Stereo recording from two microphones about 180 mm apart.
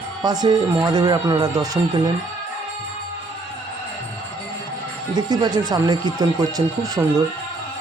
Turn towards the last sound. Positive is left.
turn(degrees=-20)  # may be behind; listen again after turning